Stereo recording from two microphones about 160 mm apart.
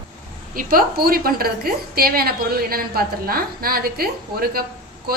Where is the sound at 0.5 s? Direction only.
65° right (ahead or behind).